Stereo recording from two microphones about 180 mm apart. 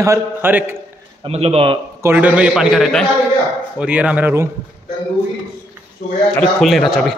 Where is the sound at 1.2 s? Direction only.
35° right (ahead or behind).